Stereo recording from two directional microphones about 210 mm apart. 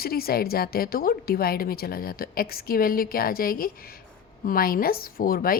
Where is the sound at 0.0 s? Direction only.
45° left (ahead or behind).